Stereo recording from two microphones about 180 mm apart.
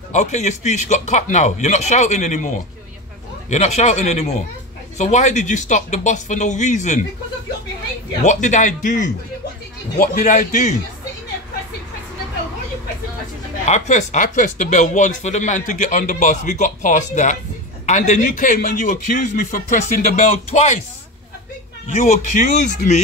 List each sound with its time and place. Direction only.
0.1 s speech: 40° left (ahead or behind)
8.3 s speech: 40° left (ahead or behind)
13.7 s speech: 40° left (ahead or behind)
21.8 s speech: 45° left (ahead or behind)